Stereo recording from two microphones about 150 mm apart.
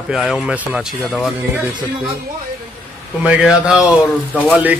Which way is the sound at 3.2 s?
10° right (ahead or behind).